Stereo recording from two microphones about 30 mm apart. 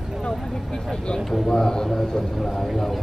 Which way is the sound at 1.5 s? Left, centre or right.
Left.